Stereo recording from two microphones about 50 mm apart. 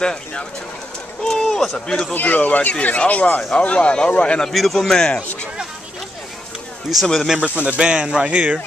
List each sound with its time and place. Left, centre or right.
0.0 s speech: centre
1.3 s speech: centre
2.1 s speech: left
4.4 s speech: centre
6.9 s speech: centre
7.3 s speech: right